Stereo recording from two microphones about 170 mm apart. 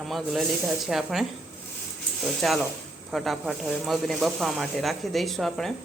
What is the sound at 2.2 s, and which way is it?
Speech, centre (ahead or behind).